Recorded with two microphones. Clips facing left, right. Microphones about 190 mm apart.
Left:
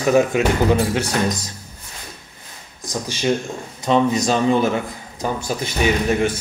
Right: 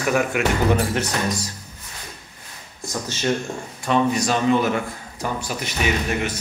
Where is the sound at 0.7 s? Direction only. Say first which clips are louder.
Left 3 dB; 10° left (ahead or behind).